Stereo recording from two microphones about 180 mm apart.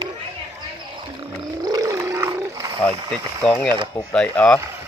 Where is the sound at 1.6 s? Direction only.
20° right (ahead or behind).